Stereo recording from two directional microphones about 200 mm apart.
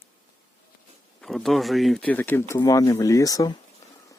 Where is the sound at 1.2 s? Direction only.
Centre (ahead or behind); by 3.6 s 15° left (ahead or behind).